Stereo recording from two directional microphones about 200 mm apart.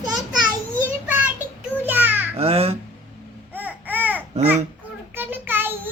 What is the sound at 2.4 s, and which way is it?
Speech, 30° right (ahead or behind).